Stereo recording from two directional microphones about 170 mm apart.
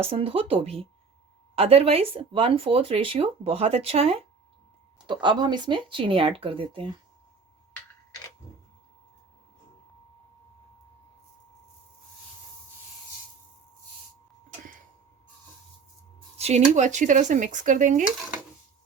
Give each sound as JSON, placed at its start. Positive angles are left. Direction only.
{"t": 0.0, "sound": "speech", "side_deg": -35}
{"t": 16.4, "sound": "speech", "side_deg": -40}